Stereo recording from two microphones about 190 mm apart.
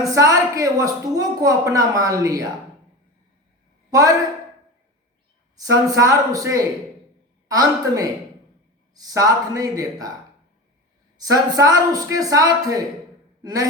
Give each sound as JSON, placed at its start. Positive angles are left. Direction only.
{"t": 0.0, "sound": "a woman's voice", "side_deg": -15}
{"t": 5.5, "sound": "a woman's voice", "side_deg": -20}
{"t": 11.2, "sound": "a man's voice", "side_deg": -20}